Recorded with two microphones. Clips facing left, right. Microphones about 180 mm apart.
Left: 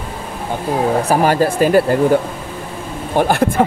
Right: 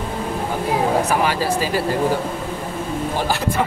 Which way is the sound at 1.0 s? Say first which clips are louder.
Left 5 dB; 40° left (ahead or behind).